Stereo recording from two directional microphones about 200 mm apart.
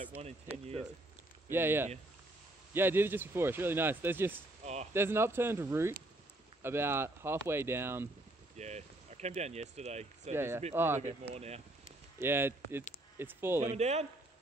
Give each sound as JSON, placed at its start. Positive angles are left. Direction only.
{"t": 0.2, "sound": "speech", "side_deg": -30}
{"t": 1.5, "sound": "speech", "side_deg": -10}
{"t": 8.5, "sound": "speech", "side_deg": -35}
{"t": 10.3, "sound": "speech", "side_deg": -10}
{"t": 11.0, "sound": "speech", "side_deg": -35}
{"t": 12.2, "sound": "speech", "side_deg": -10}
{"t": 13.7, "sound": "speech", "side_deg": -35}